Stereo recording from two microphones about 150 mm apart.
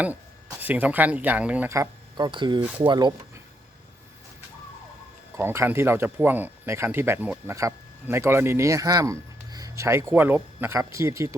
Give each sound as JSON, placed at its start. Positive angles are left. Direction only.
{"t": 0.6, "sound": "speech", "side_deg": -10}
{"t": 1.7, "sound": "speech", "side_deg": -25}
{"t": 5.4, "sound": "speech", "side_deg": -15}